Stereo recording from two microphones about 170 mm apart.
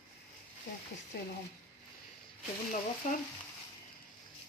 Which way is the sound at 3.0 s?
45° left (ahead or behind).